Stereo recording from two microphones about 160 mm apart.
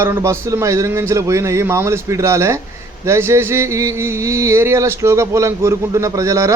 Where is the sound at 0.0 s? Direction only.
15° right (ahead or behind).